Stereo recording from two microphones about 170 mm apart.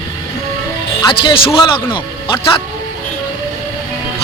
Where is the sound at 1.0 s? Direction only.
30° left (ahead or behind).